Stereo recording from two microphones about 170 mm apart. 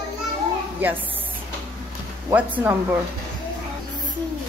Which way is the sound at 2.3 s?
10° right (ahead or behind).